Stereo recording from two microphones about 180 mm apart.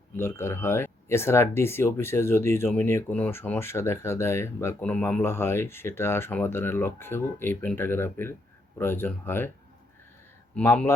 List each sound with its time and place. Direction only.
0.2 s speech: 15° left (ahead or behind)
10.5 s speech: 10° left (ahead or behind)